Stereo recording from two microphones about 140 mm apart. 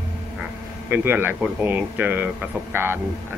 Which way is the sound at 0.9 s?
15° right (ahead or behind).